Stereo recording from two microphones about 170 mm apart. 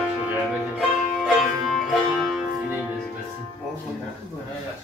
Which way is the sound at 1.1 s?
Centre (ahead or behind).